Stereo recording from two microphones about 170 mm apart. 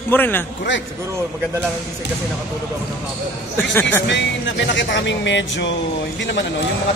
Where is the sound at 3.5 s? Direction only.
10° left (ahead or behind).